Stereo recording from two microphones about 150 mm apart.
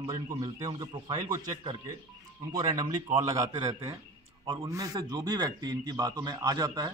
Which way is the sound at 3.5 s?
30° right (ahead or behind).